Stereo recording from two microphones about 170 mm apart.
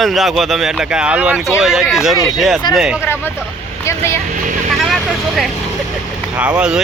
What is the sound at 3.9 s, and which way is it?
Speech, 15° left (ahead or behind).